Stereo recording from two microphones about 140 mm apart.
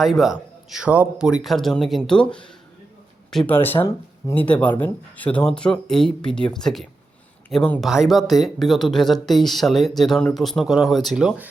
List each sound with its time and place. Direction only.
0.0 s speech: centre (ahead or behind)
3.5 s speech: 15° left (ahead or behind)
7.8 s speech: 5° right (ahead or behind)